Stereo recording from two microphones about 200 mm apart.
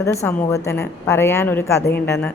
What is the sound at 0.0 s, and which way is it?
A woman's voice, 15° left (ahead or behind).